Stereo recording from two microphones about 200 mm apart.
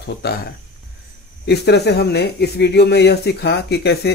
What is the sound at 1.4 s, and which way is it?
Speech, 55° left (ahead or behind).